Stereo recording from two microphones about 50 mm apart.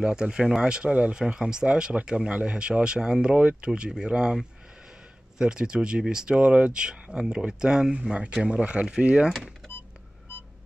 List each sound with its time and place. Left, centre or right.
0.0 s speech: centre
5.4 s speech: centre